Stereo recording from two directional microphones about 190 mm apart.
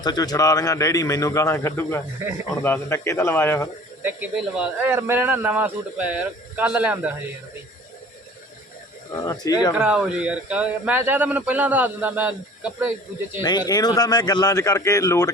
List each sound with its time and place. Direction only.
0.0 s speech: 20° left (ahead or behind)
4.0 s speech: 5° right (ahead or behind)
9.1 s speech: 20° left (ahead or behind)
9.7 s speech: 5° right (ahead or behind)
13.4 s speech: 20° left (ahead or behind)